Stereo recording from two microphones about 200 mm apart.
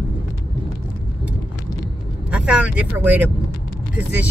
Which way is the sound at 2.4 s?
5° right (ahead or behind).